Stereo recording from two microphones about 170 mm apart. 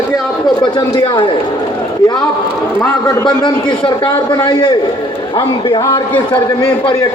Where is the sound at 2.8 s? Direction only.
20° left (ahead or behind).